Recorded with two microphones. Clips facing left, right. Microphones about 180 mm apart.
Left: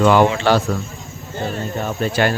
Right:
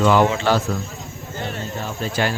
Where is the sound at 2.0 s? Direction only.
60° left (ahead or behind).